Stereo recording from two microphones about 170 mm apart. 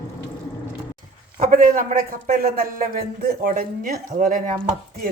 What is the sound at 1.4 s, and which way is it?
A man's voice, 50° right (ahead or behind).